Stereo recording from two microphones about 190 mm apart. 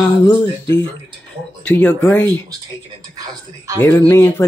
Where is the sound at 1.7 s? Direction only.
10° left (ahead or behind).